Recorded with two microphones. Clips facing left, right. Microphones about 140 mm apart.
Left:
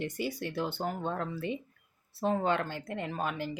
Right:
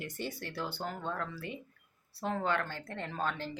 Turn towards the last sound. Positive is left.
turn(degrees=10)  # may be behind; listen again after turning